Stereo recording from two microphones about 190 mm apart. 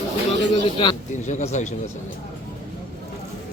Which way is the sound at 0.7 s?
25° left (ahead or behind).